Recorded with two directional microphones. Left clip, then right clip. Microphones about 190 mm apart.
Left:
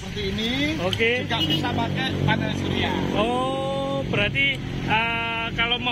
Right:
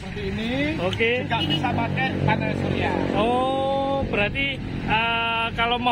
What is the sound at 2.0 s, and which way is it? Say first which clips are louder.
Speech: right 2 dB; 20° right (ahead or behind).